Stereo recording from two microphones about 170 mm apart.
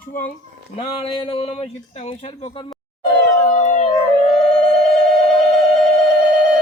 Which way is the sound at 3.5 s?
45° left (ahead or behind).